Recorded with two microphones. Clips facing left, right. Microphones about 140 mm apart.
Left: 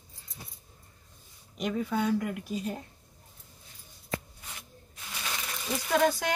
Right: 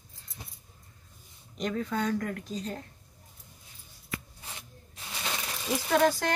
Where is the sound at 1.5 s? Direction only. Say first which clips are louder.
Left 1 dB; 5° left (ahead or behind).